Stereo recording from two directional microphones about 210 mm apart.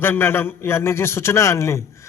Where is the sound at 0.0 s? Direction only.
10° left (ahead or behind).